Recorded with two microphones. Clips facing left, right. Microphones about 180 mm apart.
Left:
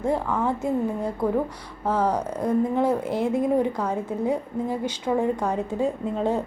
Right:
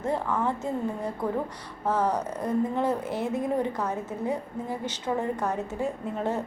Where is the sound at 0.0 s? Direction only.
10° left (ahead or behind).